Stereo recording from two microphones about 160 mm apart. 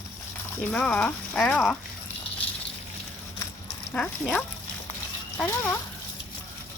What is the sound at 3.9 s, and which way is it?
Speech, 10° left (ahead or behind).